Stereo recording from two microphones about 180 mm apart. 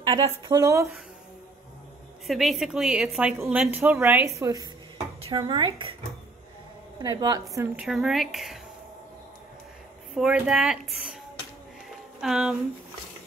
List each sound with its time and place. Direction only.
0.0 s speech: 25° right (ahead or behind)
2.2 s a woman's voice: centre (ahead or behind); by 5.9 s 25° right (ahead or behind)
7.0 s speech: 20° right (ahead or behind)
7.8 s a woman's voice: centre (ahead or behind)
10.1 s a woman's voice: 5° right (ahead or behind)
12.2 s a woman's voice: centre (ahead or behind)